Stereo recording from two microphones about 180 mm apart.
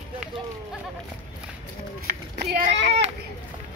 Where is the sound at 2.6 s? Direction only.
35° right (ahead or behind).